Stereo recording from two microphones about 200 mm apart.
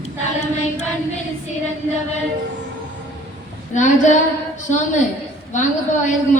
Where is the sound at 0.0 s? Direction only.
35° left (ahead or behind).